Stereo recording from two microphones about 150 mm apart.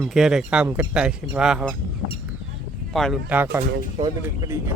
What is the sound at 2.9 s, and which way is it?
Speech, centre (ahead or behind).